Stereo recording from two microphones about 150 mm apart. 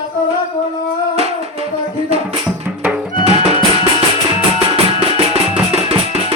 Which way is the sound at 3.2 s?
45° right (ahead or behind).